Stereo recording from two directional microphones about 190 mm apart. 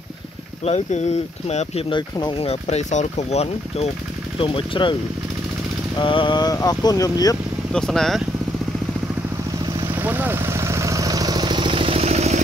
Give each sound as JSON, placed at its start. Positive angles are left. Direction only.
{"t": 0.7, "sound": "speech", "side_deg": 35}
{"t": 5.9, "sound": "speech", "side_deg": 25}
{"t": 7.7, "sound": "speech", "side_deg": 5}
{"t": 9.8, "sound": "vehicle", "side_deg": -15}